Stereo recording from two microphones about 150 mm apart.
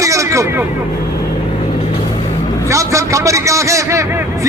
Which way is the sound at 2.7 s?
20° right (ahead or behind).